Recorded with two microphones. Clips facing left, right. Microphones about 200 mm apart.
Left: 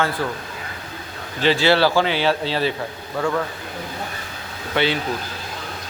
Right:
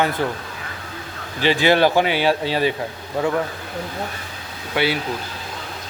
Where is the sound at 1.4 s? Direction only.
15° right (ahead or behind).